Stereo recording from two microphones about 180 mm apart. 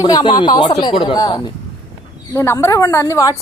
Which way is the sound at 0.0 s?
25° left (ahead or behind).